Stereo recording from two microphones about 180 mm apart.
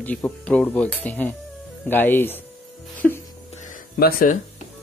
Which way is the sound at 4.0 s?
55° left (ahead or behind).